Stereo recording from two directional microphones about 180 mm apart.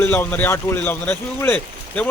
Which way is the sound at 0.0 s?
10° left (ahead or behind).